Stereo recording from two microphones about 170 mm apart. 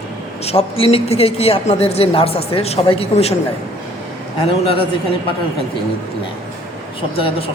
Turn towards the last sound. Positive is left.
turn(degrees=35)  # may be behind; listen again after turning